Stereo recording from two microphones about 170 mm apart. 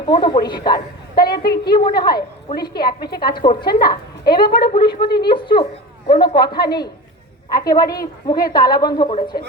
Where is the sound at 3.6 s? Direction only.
65° left (ahead or behind).